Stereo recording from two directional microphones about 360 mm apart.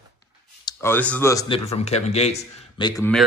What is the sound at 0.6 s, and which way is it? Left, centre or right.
Speech, centre.